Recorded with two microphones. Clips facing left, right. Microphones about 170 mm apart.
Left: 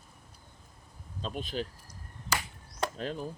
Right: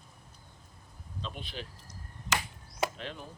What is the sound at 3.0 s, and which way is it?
Speech, 40° left (ahead or behind).